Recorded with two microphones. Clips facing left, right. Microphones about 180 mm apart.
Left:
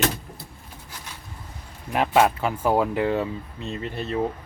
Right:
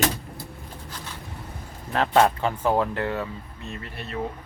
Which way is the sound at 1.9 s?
10° left (ahead or behind).